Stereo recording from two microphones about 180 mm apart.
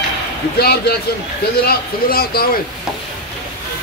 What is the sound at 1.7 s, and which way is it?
Speech, 55° left (ahead or behind).